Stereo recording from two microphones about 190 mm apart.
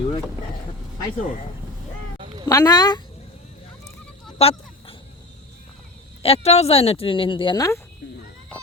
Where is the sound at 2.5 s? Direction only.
20° left (ahead or behind).